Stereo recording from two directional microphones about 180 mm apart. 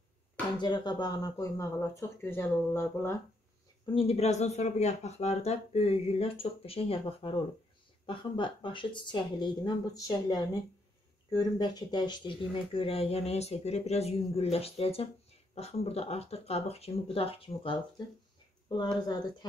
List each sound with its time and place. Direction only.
0.6 s speech: 25° left (ahead or behind)
3.8 s speech: 30° left (ahead or behind)